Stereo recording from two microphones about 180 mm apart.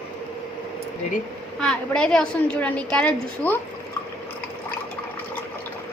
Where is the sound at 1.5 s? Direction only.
5° left (ahead or behind).